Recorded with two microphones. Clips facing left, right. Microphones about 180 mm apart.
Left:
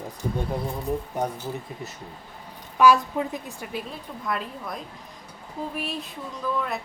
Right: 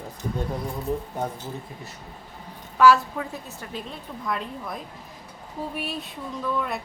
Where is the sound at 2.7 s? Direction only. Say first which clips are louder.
Even; 15° left (ahead or behind).